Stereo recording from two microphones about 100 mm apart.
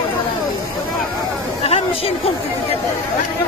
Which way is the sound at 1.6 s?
80° left.